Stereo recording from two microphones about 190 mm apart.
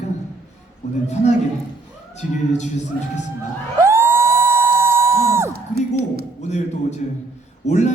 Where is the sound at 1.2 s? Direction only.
35° left (ahead or behind).